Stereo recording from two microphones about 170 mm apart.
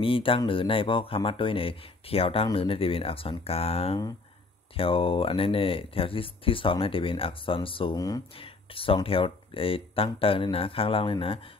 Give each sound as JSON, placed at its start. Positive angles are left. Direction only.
{"t": 0.0, "sound": "speech", "side_deg": 30}
{"t": 8.4, "sound": "speech", "side_deg": 30}